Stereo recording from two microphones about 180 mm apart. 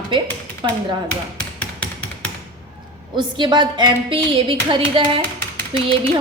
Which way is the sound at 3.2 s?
25° right (ahead or behind).